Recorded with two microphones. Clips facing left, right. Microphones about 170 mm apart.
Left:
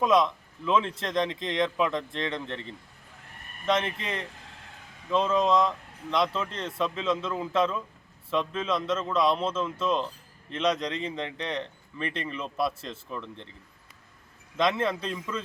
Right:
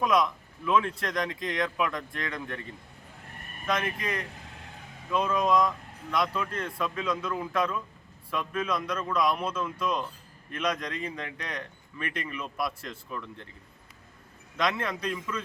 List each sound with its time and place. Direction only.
0.0 s speech: 25° left (ahead or behind)
14.5 s speech: 25° left (ahead or behind)